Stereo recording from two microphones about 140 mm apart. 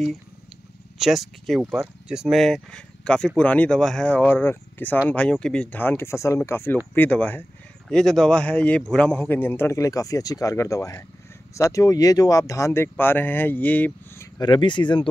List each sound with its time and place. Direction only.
0.9 s a man's voice: centre (ahead or behind); by 14.3 s 15° left (ahead or behind)
14.4 s speech: 35° left (ahead or behind)